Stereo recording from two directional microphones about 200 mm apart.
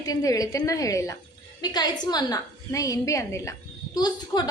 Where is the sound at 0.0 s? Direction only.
20° left (ahead or behind).